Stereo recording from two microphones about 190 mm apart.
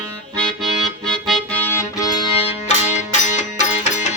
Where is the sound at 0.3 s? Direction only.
5° left (ahead or behind).